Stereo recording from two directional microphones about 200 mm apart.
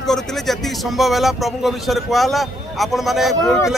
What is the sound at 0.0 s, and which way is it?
A man's voice, centre (ahead or behind).